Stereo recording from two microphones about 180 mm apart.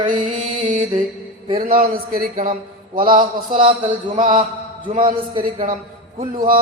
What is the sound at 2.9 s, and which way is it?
A man's voice, 25° right (ahead or behind).